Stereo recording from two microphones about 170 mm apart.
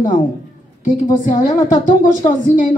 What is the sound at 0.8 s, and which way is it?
A woman's voice, 50° left (ahead or behind).